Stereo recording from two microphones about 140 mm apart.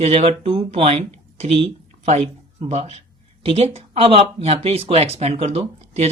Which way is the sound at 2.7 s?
45° right (ahead or behind).